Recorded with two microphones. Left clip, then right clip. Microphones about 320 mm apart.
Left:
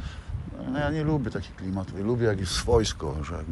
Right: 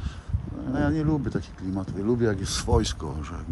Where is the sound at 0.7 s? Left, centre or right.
Centre.